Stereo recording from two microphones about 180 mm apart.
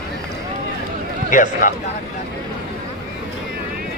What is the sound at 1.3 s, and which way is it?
Speech, 45° left (ahead or behind).